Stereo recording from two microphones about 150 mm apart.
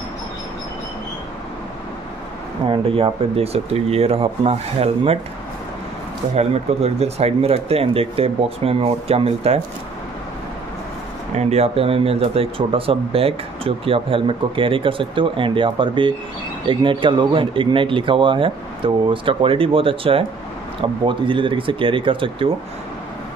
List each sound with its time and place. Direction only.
2.6 s speech: 35° right (ahead or behind)
6.3 s speech: 45° right (ahead or behind)
11.3 s speech: 45° right (ahead or behind)